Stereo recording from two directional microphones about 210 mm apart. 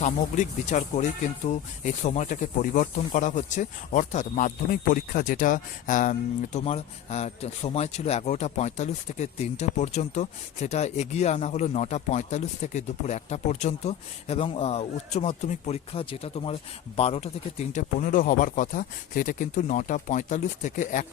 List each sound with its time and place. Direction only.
0.0 s speech: 35° left (ahead or behind)